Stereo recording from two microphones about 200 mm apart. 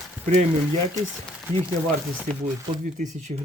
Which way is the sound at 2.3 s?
40° right (ahead or behind).